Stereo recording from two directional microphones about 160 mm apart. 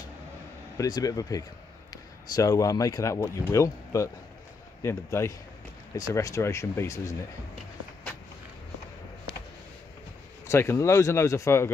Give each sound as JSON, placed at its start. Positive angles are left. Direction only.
{"t": 0.7, "sound": "speech", "side_deg": 25}
{"t": 10.4, "sound": "speech", "side_deg": 15}